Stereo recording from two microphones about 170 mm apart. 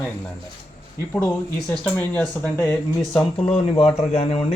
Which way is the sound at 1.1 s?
5° left (ahead or behind).